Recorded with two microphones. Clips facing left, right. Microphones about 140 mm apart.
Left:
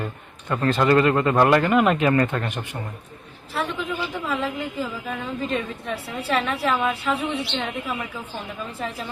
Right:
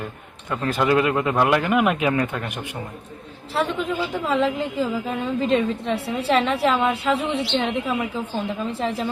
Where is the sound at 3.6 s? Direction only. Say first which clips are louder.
Right 4 dB; 25° right (ahead or behind).